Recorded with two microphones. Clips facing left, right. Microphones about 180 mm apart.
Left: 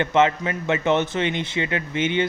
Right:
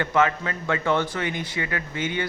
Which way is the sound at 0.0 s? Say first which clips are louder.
Left 3 dB; 25° left (ahead or behind).